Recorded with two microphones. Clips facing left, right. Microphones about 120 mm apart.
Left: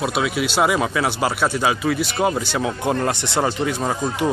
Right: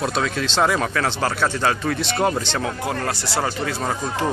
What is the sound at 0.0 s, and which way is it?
Speech, 10° left (ahead or behind).